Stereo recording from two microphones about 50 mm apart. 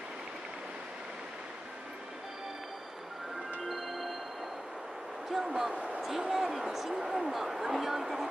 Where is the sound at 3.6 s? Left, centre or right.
Centre.